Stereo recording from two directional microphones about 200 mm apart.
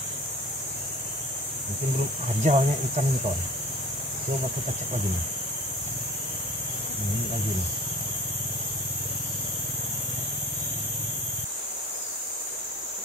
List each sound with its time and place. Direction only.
2.4 s speech: 35° right (ahead or behind)